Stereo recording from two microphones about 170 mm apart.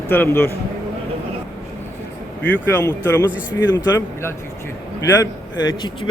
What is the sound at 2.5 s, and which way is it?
Speech, 10° left (ahead or behind).